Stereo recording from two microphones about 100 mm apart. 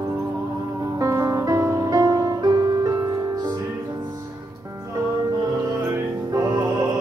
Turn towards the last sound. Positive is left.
turn(degrees=-40)  # may be behind; listen again after turning